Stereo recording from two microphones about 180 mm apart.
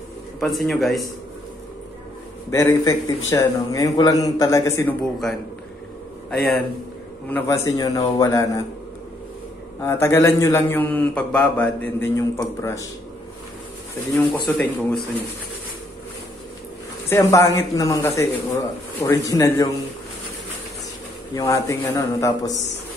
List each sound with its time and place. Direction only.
0.4 s a man's voice: centre (ahead or behind)
2.5 s a man's voice: 20° left (ahead or behind)
7.2 s a man's voice: 10° left (ahead or behind)
9.8 s a man's voice: 15° left (ahead or behind)
14.1 s a man's voice: 10° left (ahead or behind)
17.1 s a man's voice: 15° left (ahead or behind)
21.4 s a man's voice: 15° left (ahead or behind)